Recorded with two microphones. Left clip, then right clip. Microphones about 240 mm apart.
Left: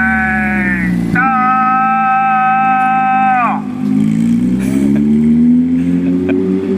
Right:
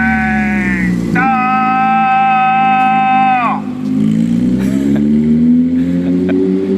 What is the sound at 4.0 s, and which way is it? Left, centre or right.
Vehicle, left.